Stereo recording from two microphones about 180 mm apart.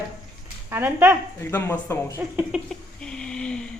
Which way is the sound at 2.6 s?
5° left (ahead or behind).